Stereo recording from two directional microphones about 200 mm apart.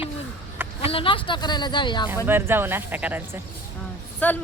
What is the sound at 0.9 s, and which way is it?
Speech, 25° left (ahead or behind).